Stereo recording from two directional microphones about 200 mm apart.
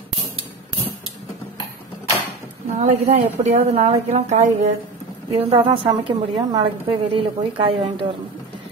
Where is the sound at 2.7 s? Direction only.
35° right (ahead or behind).